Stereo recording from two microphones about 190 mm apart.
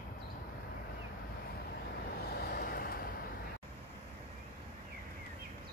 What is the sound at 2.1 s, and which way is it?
Vehicle, 55° left (ahead or behind).